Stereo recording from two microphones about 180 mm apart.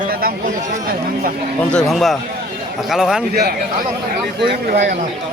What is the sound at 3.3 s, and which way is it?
Speech, 60° right (ahead or behind).